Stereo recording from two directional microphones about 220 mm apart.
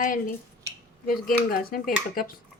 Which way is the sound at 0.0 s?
40° left (ahead or behind).